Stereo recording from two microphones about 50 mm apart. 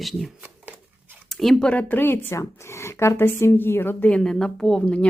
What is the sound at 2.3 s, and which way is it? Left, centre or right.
Speech, left.